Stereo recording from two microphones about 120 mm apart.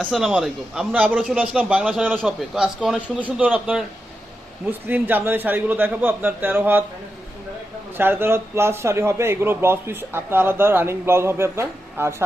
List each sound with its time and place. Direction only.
0.0 s a man's voice: 5° left (ahead or behind)
0.3 s a man's voice: 10° right (ahead or behind)
7.9 s a man's voice: 20° right (ahead or behind)